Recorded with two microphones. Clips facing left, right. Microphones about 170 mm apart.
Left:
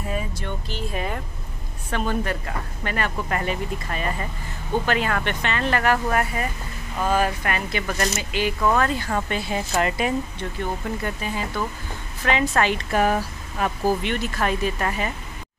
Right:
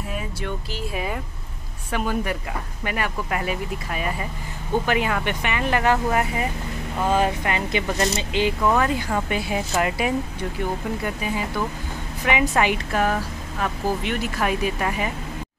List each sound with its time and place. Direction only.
0.9 s speech: 5° right (ahead or behind)
12.9 s speech: 10° left (ahead or behind)
14.0 s speech: 5° right (ahead or behind)